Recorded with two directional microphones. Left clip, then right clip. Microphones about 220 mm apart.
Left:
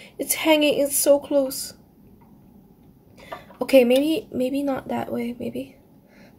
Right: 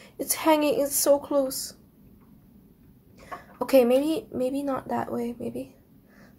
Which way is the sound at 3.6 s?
5° left (ahead or behind).